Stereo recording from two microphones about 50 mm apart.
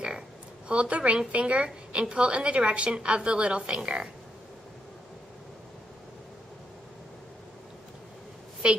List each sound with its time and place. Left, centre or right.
0.7 s a woman's voice: right